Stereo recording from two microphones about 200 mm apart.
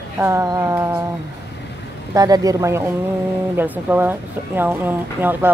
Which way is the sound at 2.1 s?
20° right (ahead or behind).